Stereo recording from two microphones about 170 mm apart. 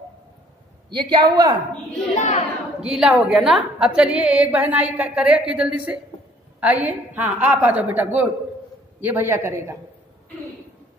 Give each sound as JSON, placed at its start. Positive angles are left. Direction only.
{"t": 0.8, "sound": "a man's voice", "side_deg": -25}
{"t": 2.1, "sound": "a child's voice", "side_deg": 45}
{"t": 2.8, "sound": "a woman's voice", "side_deg": -5}